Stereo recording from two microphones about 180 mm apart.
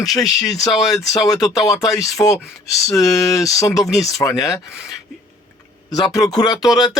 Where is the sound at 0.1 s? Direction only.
Centre (ahead or behind).